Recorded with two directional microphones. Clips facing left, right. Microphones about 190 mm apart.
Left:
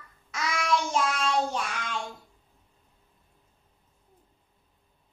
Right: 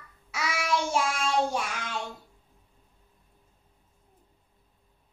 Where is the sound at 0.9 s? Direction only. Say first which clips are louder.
Even; 10° right (ahead or behind).